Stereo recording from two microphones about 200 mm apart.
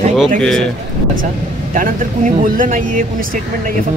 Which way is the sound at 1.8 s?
45° right (ahead or behind).